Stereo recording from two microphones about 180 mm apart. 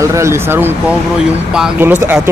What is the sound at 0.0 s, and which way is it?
Speech, 15° right (ahead or behind).